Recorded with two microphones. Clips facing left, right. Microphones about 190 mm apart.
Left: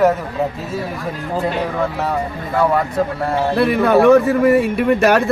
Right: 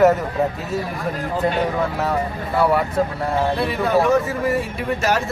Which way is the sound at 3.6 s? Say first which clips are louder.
Left 10 dB; 65° left (ahead or behind).